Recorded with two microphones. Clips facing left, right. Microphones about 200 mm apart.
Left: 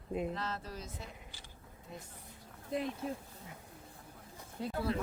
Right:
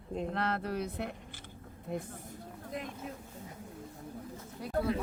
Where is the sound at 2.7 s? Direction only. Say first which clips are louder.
Left 5 dB; 30° left (ahead or behind).